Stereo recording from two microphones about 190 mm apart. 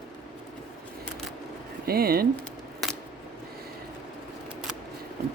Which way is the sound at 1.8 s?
55° right (ahead or behind).